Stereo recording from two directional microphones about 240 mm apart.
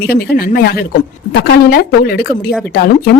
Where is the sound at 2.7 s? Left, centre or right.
Left.